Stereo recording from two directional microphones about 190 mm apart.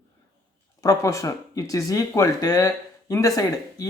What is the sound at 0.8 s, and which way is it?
Speech, 15° left (ahead or behind).